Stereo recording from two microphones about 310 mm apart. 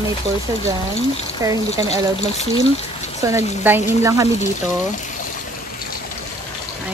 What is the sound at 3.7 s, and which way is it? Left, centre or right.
Speech, centre.